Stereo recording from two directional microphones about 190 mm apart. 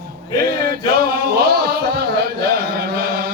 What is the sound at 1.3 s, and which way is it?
Music, 55° right (ahead or behind).